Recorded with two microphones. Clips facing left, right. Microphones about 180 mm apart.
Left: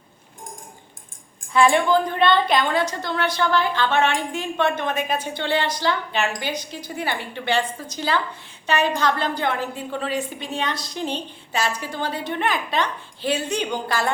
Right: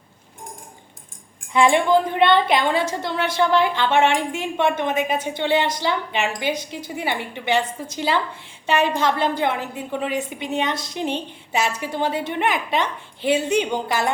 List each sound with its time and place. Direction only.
1.5 s a woman's voice: 20° right (ahead or behind)